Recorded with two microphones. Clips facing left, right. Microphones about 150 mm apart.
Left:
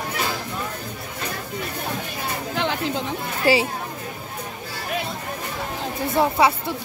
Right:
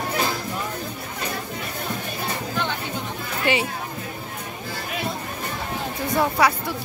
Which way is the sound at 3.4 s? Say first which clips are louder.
Left 4 dB; 35° left (ahead or behind).